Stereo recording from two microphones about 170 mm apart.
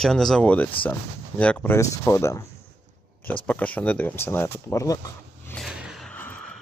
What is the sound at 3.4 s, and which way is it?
Speech, 5° left (ahead or behind).